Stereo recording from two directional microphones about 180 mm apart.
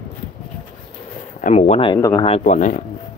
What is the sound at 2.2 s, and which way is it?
Speech, 40° left (ahead or behind).